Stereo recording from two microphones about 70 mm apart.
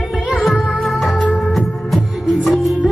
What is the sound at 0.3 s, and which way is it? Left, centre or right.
Music, centre.